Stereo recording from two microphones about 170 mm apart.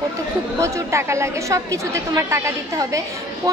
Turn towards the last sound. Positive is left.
turn(degrees=-20)  # may be behind; listen again after turning